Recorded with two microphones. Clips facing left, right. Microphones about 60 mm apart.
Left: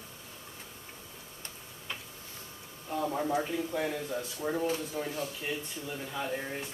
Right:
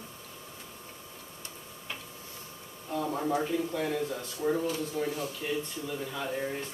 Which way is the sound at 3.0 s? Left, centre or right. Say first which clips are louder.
Right 1 dB; centre.